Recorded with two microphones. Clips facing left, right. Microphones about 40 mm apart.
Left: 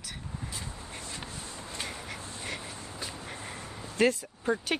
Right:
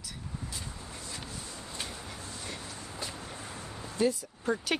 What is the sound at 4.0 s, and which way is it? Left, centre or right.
Speech, left.